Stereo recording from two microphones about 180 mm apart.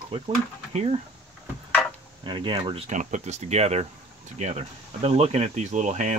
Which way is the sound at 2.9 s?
45° right (ahead or behind).